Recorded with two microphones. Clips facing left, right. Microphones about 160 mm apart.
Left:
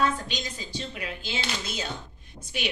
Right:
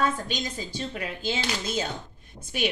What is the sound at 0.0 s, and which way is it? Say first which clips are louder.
Speech: even; 50° right (ahead or behind).